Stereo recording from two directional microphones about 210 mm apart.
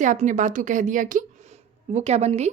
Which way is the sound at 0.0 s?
35° right (ahead or behind).